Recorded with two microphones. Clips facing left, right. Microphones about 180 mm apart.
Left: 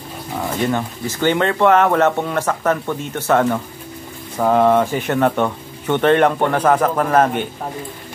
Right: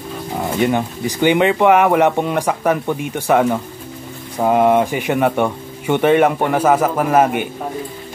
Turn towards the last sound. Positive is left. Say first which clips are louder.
# right 1 dB
turn(degrees=-10)  # may be behind; listen again after turning